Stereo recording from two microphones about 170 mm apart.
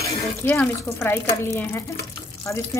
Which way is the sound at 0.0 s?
10° left (ahead or behind).